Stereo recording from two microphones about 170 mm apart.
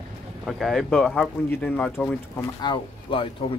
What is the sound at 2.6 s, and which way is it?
Speech, 30° left (ahead or behind).